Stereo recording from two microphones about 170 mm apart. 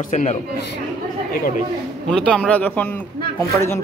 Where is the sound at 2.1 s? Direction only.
5° left (ahead or behind).